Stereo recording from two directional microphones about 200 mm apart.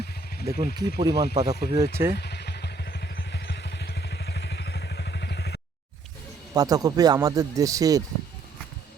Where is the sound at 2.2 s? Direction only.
55° left (ahead or behind).